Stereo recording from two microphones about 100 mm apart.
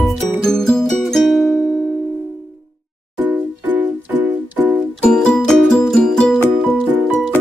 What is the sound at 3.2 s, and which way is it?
Music, 15° right (ahead or behind).